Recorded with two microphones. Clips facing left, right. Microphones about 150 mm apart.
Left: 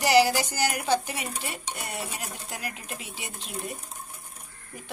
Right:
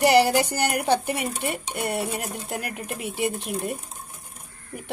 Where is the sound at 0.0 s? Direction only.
55° right (ahead or behind).